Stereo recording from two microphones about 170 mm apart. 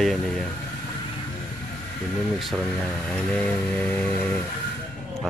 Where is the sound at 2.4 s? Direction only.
Centre (ahead or behind).